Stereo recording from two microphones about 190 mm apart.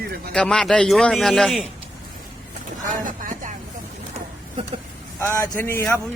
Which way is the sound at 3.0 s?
45° right (ahead or behind).